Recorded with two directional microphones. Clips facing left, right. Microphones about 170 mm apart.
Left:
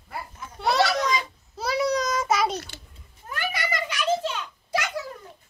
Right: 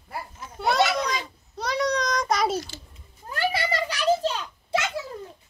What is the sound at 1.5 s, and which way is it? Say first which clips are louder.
Child singing: left 1 dB; 5° left (ahead or behind).